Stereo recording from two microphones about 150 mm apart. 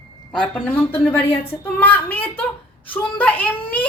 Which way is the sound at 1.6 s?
15° left (ahead or behind).